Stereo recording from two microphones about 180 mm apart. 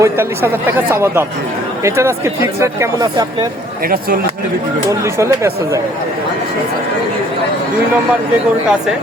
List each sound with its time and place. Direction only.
0.0 s speech: 15° right (ahead or behind)
4.9 s speech: 15° right (ahead or behind)